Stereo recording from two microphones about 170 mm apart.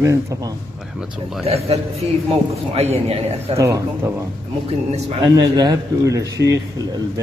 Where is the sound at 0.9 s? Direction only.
5° right (ahead or behind).